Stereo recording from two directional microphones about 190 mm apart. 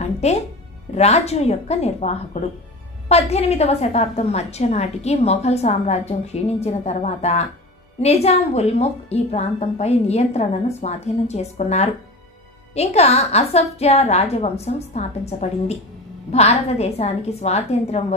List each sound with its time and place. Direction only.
0.0 s music: 35° left (ahead or behind)
0.9 s a woman's voice: 35° left (ahead or behind)